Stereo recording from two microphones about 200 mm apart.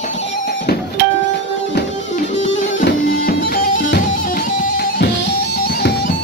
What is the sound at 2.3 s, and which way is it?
Music, 35° left (ahead or behind).